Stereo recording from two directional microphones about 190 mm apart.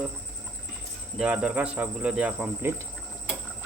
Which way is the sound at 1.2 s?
5° right (ahead or behind).